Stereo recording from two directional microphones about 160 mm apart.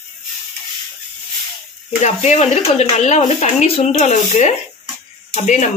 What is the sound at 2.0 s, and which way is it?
Speech, 45° left (ahead or behind).